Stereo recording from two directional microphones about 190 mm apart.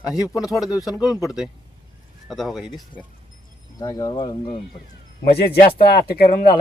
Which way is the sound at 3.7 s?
20° left (ahead or behind).